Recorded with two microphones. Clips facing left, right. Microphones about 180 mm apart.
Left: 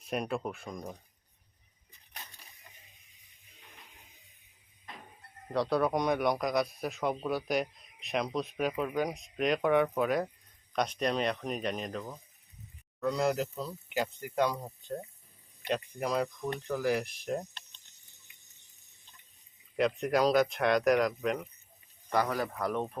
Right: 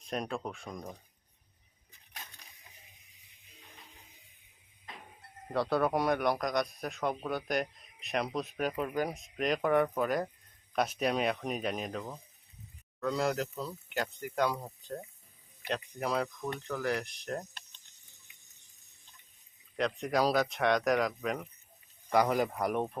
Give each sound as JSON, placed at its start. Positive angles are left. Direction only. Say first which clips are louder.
{"t": 0.0, "sound": "speech", "louder": "left 2 dB", "side_deg": 5}
{"t": 5.5, "sound": "speech", "louder": "left 1 dB", "side_deg": 0}
{"t": 19.7, "sound": "speech", "louder": "left 3 dB", "side_deg": 5}
{"t": 22.1, "sound": "speech", "louder": "right 3 dB", "side_deg": -15}